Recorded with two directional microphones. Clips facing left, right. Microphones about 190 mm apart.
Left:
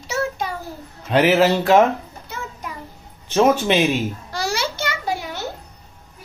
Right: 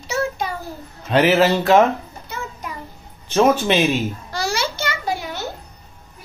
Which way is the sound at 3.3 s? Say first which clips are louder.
Even; 15° left (ahead or behind).